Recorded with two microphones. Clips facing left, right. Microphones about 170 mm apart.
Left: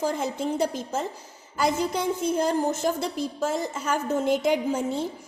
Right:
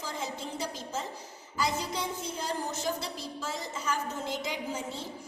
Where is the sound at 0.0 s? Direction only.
55° left (ahead or behind).